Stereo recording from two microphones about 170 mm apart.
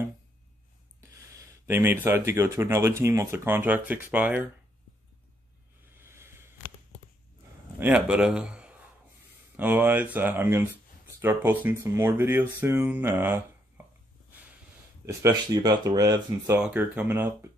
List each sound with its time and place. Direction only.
1.3 s a sound: 15° right (ahead or behind)
2.0 s speech: 15° right (ahead or behind)
5.9 s a sound: 15° right (ahead or behind)
7.8 s a man's voice: 5° right (ahead or behind)
15.0 s speech: 20° right (ahead or behind)
16.5 s speech: 10° right (ahead or behind)